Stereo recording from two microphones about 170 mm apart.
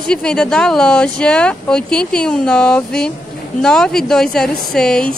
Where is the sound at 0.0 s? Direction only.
5° left (ahead or behind).